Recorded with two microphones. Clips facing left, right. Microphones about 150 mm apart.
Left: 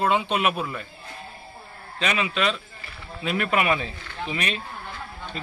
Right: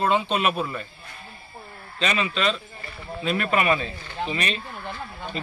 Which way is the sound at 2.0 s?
10° left (ahead or behind).